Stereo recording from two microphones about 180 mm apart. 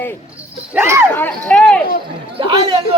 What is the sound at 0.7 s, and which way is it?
Speech, 15° right (ahead or behind).